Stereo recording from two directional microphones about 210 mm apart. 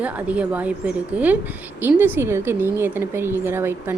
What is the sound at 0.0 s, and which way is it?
A woman's voice, 5° right (ahead or behind).